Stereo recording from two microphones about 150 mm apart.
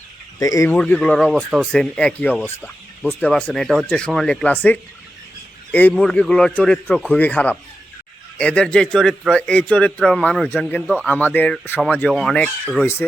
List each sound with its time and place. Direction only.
0.3 s speech: 25° left (ahead or behind)
0.7 s speech: 10° left (ahead or behind)
5.9 s a man's voice: 5° left (ahead or behind)